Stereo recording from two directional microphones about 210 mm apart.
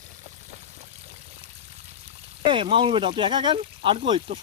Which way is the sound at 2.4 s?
25° right (ahead or behind).